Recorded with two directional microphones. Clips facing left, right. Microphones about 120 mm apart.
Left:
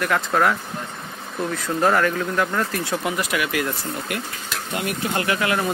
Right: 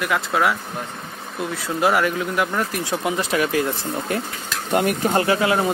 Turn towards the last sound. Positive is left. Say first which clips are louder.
# right 3 dB
turn(degrees=-25)  # may be behind; listen again after turning